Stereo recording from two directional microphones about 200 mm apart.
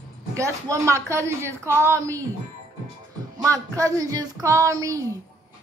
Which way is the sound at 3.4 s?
15° right (ahead or behind).